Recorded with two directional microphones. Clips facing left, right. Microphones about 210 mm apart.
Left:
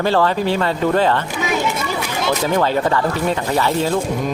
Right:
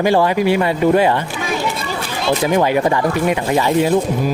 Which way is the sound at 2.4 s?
15° right (ahead or behind).